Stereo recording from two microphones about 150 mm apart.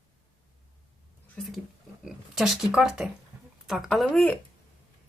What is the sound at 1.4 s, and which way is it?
Speech, 5° left (ahead or behind).